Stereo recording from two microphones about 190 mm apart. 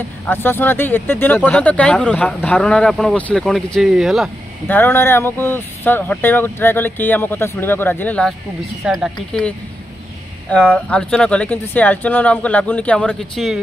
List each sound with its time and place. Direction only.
0.3 s speech: 10° left (ahead or behind)
4.6 s speech: 10° left (ahead or behind)
10.7 s speech: 5° left (ahead or behind)